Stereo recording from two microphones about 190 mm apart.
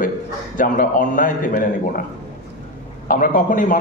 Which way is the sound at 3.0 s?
45° left (ahead or behind).